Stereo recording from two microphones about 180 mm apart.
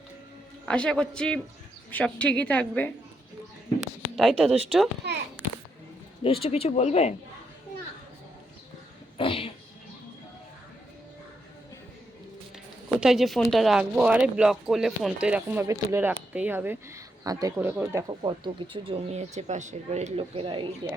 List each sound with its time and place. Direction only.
0.6 s a man's voice: 5° left (ahead or behind)
4.1 s a man's voice: centre (ahead or behind)
5.0 s a child's voice: 65° right (ahead or behind)
6.2 s speech: 30° left (ahead or behind)
9.1 s cat: 30° left (ahead or behind)
13.0 s speech: centre (ahead or behind)
18.1 s speech: 25° right (ahead or behind)